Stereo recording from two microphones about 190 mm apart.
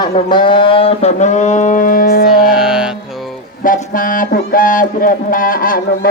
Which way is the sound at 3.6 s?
45° left (ahead or behind).